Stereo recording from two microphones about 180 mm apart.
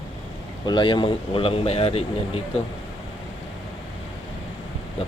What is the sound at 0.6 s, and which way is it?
Speech, 25° left (ahead or behind).